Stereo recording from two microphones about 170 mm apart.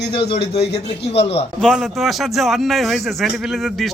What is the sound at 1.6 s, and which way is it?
Speech, centre (ahead or behind).